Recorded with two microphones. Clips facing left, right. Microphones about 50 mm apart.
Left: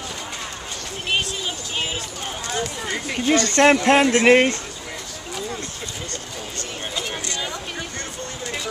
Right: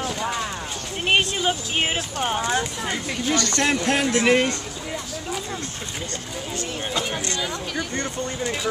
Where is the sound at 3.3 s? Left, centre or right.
Left.